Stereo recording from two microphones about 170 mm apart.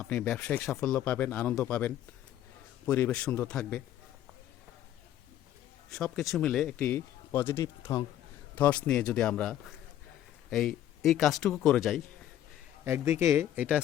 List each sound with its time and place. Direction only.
0.0 s a man's voice: 10° left (ahead or behind)
5.9 s a man's voice: centre (ahead or behind)
12.8 s speech: 15° right (ahead or behind)